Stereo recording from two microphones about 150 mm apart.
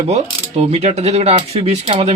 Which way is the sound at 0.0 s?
45° right (ahead or behind).